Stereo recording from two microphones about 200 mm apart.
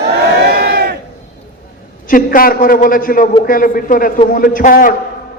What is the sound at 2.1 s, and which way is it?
A man's voice, 45° left (ahead or behind).